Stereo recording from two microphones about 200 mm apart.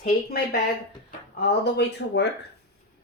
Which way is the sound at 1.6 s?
55° left (ahead or behind).